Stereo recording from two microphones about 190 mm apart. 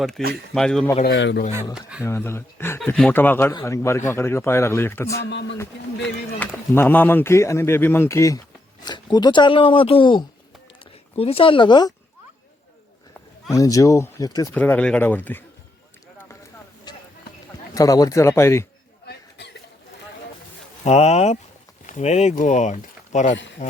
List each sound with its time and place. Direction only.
0.2 s speech: centre (ahead or behind)
1.0 s speech: 65° left (ahead or behind)
1.7 s speech: 5° right (ahead or behind)
2.0 s speech: 15° left (ahead or behind)
5.3 s speech: 65° left (ahead or behind)
6.4 s speech: 10° left (ahead or behind)
13.5 s speech: 15° left (ahead or behind)
14.5 s speech: 10° left (ahead or behind)
16.9 s basketball bounce: 20° left (ahead or behind)
17.7 s speech: 20° left (ahead or behind)
20.8 s speech: 35° left (ahead or behind)